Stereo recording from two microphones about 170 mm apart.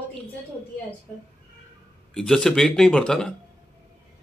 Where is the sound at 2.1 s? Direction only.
5° left (ahead or behind).